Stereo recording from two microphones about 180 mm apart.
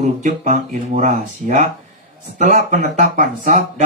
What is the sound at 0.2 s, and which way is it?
Speech, 45° right (ahead or behind).